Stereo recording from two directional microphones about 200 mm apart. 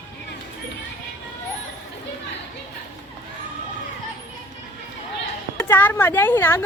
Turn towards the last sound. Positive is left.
turn(degrees=10)  # may be behind; listen again after turning